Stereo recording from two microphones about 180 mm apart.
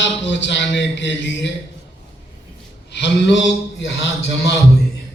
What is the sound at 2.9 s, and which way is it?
A man's voice, 75° left (ahead or behind).